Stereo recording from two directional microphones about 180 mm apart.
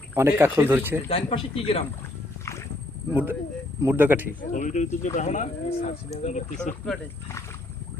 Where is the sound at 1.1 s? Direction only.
30° left (ahead or behind).